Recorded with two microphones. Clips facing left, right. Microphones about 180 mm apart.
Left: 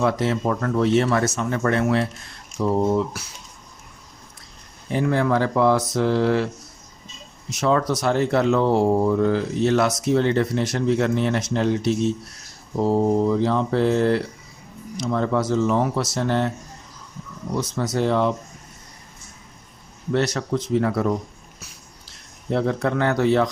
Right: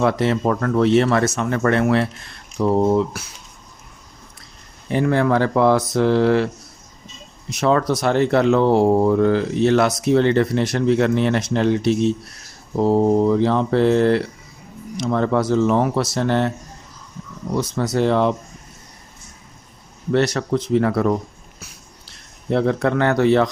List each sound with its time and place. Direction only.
0.0 s speech: 65° right (ahead or behind)
4.9 s speech: 65° right (ahead or behind)
7.5 s speech: 60° right (ahead or behind)
17.6 s speech: 60° right (ahead or behind)
20.1 s speech: 65° right (ahead or behind)
22.4 s speech: 70° right (ahead or behind)